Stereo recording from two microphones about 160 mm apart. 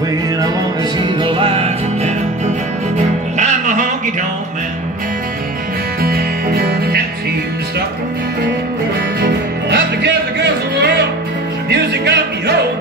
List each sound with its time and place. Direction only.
0.9 s music: 30° right (ahead or behind)
3.3 s music: 50° right (ahead or behind)
6.0 s music: 70° right (ahead or behind)
9.2 s music: 90° right